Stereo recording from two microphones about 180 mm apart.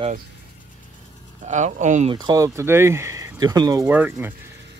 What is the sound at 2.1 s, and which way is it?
Speech, 20° right (ahead or behind).